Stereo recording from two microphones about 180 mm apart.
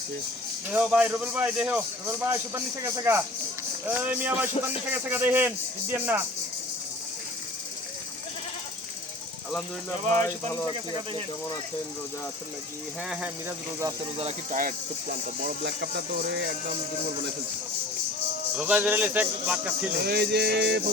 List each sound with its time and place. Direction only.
0.7 s speech: 5° right (ahead or behind)
10.2 s speech: 15° left (ahead or behind)
14.2 s speech: 35° right (ahead or behind)
15.1 s speech: 60° right (ahead or behind)
18.5 s speech: 10° right (ahead or behind)
20.1 s speech: 65° right (ahead or behind)